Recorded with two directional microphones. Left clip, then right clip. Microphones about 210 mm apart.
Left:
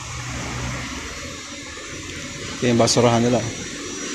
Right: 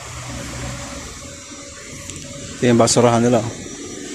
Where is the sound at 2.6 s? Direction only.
20° right (ahead or behind).